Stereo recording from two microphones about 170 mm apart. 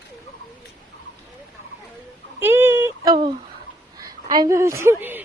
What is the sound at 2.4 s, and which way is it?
A woman's voice, 15° right (ahead or behind).